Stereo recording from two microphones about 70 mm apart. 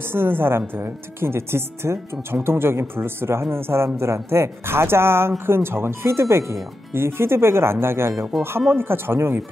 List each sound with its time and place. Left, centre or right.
0.1 s speech: right